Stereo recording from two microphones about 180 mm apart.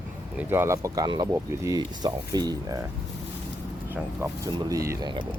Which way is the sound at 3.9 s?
15° right (ahead or behind).